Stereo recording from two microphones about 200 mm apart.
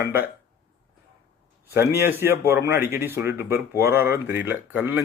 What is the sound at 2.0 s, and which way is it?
Speech, 10° right (ahead or behind).